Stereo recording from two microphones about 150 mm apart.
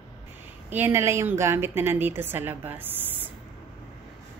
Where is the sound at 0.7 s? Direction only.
15° right (ahead or behind).